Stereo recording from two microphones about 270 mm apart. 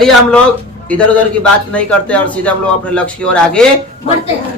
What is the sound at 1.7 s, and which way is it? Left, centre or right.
A man's voice, centre.